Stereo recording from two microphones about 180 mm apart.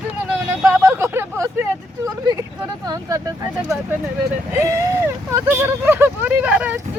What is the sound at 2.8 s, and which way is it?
Speech, 20° right (ahead or behind).